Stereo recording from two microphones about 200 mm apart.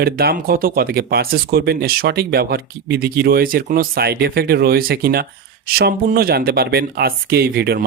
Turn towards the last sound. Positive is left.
turn(degrees=-50)  # may be behind; listen again after turning